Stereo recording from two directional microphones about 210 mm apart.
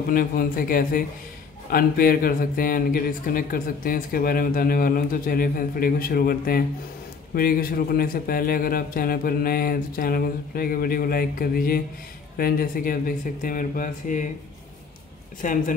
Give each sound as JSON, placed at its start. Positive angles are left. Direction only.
{"t": 0.1, "sound": "speech", "side_deg": 40}
{"t": 15.4, "sound": "speech", "side_deg": 40}